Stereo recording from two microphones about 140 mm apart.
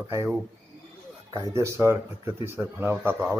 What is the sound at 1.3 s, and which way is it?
Speech, 20° right (ahead or behind).